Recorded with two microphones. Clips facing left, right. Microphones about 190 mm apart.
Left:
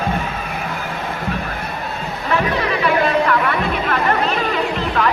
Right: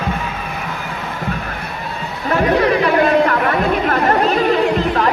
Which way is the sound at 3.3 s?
40° right (ahead or behind).